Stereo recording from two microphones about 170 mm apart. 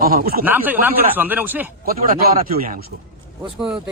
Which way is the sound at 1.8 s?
60° right (ahead or behind).